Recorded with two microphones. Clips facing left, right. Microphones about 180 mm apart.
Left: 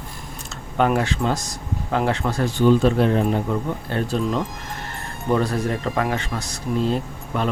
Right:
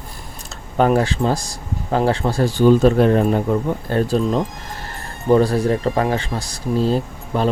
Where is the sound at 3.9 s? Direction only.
40° right (ahead or behind).